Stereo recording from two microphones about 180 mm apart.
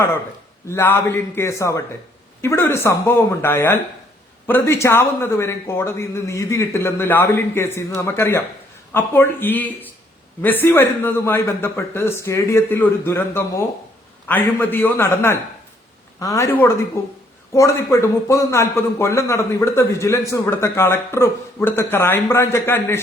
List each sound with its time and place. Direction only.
0.7 s a man's voice: 15° left (ahead or behind)